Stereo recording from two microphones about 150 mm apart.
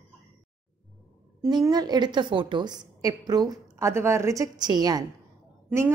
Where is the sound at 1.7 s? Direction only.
25° right (ahead or behind).